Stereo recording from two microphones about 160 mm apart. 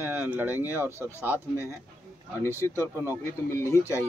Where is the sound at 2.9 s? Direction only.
15° right (ahead or behind).